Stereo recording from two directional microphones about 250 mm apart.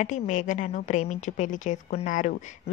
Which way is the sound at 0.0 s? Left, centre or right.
Left.